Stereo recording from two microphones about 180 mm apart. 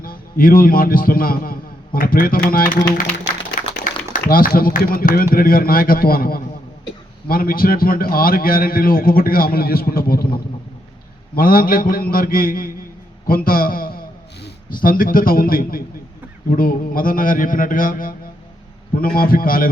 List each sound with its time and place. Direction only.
0.0 s a man's voice: 55° left (ahead or behind)
3.6 s a sound: 45° left (ahead or behind)
4.1 s a man's voice: 55° left (ahead or behind)
11.3 s a man's voice: 55° left (ahead or behind)
19.1 s a man's voice: 55° left (ahead or behind)